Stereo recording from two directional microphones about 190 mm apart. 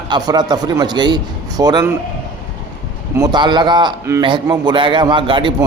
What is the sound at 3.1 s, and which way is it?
Speech, 20° right (ahead or behind).